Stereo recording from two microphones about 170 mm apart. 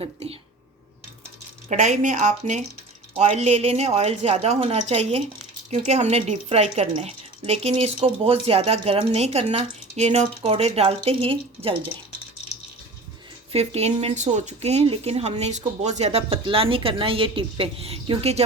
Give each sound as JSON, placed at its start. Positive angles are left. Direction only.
{"t": 0.0, "sound": "speech", "side_deg": -35}
{"t": 1.7, "sound": "speech", "side_deg": -45}
{"t": 13.5, "sound": "speech", "side_deg": -40}